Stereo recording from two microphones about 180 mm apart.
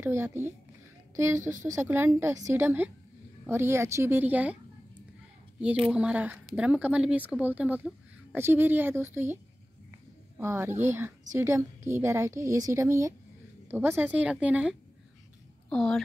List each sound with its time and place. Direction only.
0.0 s speech: 15° right (ahead or behind)
5.6 s a woman's voice: 5° right (ahead or behind)